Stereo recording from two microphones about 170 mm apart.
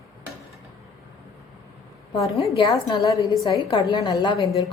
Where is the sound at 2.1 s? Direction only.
20° left (ahead or behind).